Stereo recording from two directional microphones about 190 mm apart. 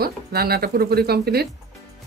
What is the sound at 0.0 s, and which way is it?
Speech, 55° right (ahead or behind).